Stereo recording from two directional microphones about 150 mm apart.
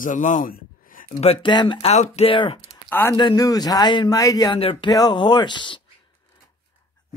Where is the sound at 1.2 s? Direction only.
40° left (ahead or behind).